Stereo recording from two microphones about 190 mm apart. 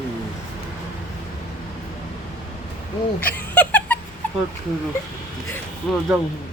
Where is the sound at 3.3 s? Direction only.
10° left (ahead or behind).